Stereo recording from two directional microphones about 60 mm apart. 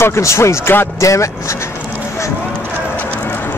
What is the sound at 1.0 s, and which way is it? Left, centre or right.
Speech, left.